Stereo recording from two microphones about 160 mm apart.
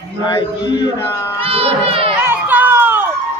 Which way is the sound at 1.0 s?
15° left (ahead or behind).